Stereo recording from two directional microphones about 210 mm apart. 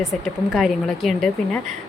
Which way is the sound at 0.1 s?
Centre (ahead or behind).